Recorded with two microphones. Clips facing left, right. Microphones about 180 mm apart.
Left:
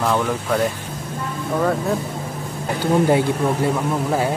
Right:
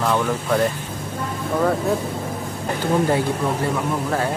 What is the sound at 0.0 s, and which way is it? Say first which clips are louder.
Speech: left 1 dB; centre (ahead or behind).